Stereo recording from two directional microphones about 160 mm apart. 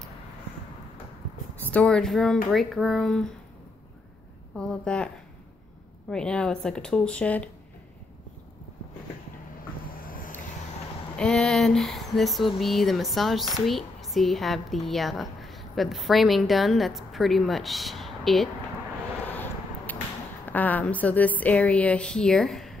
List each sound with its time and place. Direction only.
1.7 s speech: 5° left (ahead or behind)
4.6 s speech: 5° left (ahead or behind)
9.9 s vehicle: 65° left (ahead or behind)
11.1 s speech: 5° left (ahead or behind)
19.2 s vehicle: 10° left (ahead or behind)
20.4 s a woman's voice: 10° left (ahead or behind)